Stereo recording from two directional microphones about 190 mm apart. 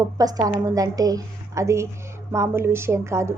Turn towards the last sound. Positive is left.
turn(degrees=-15)  # may be behind; listen again after turning